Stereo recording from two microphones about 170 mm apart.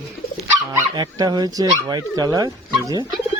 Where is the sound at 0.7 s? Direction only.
20° right (ahead or behind).